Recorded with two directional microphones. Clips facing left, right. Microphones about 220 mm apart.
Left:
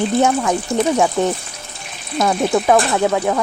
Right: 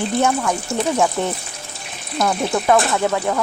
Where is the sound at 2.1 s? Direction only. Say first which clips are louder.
Left 3 dB; centre (ahead or behind).